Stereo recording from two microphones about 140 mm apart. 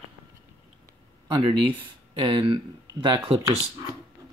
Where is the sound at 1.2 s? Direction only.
35° right (ahead or behind).